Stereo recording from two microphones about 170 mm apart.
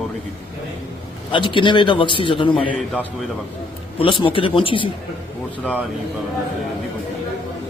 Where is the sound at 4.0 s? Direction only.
30° left (ahead or behind).